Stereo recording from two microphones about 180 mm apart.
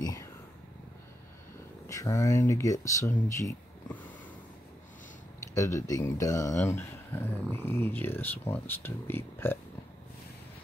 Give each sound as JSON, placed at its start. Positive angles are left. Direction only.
{"t": 0.0, "sound": "whispering", "side_deg": 20}
{"t": 1.9, "sound": "speech", "side_deg": 15}
{"t": 5.5, "sound": "speech", "side_deg": 15}